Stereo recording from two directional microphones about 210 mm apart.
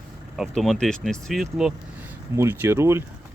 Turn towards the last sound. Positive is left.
turn(degrees=-10)  # may be behind; listen again after turning